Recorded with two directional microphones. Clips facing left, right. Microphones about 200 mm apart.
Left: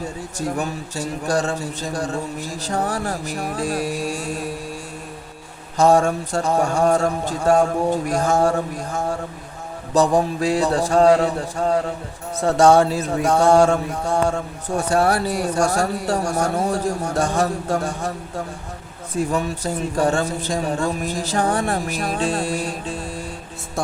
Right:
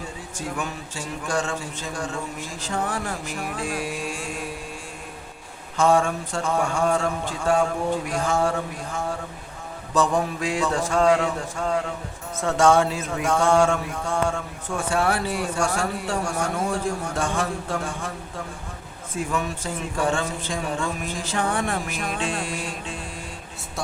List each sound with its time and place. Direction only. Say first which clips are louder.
0.3 s mantra: left 6 dB; 40° left (ahead or behind)
5.7 s mantra: left 4 dB; 40° left (ahead or behind)
19.1 s mantra: left 5 dB; 40° left (ahead or behind)